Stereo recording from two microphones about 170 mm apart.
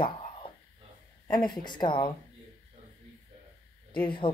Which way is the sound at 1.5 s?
25° left (ahead or behind).